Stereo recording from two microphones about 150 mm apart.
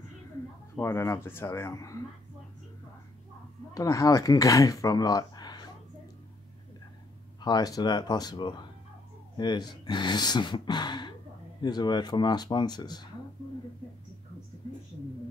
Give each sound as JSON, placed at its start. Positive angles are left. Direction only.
{"t": 0.7, "sound": "speech", "side_deg": 20}
{"t": 3.7, "sound": "speech", "side_deg": 20}
{"t": 7.4, "sound": "speech", "side_deg": 25}